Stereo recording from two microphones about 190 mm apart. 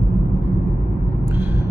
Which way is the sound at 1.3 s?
10° right (ahead or behind).